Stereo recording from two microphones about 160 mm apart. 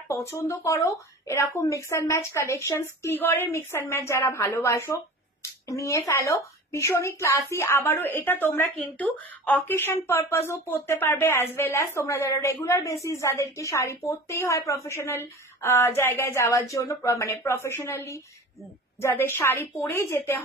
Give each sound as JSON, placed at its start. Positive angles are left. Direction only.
{"t": 0.1, "sound": "a woman's voice", "side_deg": 20}